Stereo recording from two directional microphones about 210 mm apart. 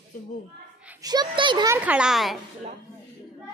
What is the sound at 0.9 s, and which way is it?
A child's voice, 15° right (ahead or behind).